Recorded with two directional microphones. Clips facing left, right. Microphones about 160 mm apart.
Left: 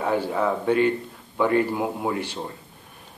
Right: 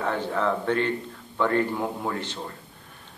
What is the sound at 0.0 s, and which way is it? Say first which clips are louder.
Speech: left 3 dB; 10° left (ahead or behind).